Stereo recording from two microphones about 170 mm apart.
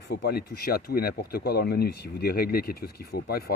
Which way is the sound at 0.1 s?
65° left (ahead or behind).